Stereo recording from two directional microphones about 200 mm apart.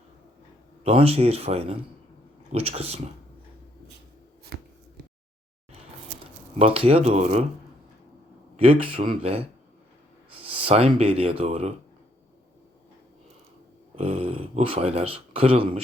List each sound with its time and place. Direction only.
0.9 s speech: 30° right (ahead or behind)
4.5 s shuffle: 50° right (ahead or behind)
6.6 s speech: 30° right (ahead or behind)
8.5 s speech: 25° right (ahead or behind)
13.9 s speech: 30° right (ahead or behind)